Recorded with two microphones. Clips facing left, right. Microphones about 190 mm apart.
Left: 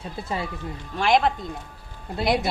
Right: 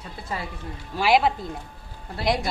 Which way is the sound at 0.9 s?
5° right (ahead or behind).